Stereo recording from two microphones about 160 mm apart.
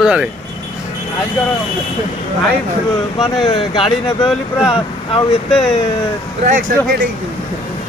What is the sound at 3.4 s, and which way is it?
Speech, 35° left (ahead or behind).